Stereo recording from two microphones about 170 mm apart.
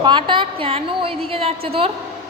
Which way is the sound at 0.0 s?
30° right (ahead or behind).